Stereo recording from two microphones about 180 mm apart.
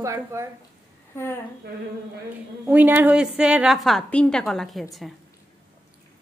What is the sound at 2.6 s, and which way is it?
A woman's voice, 10° right (ahead or behind).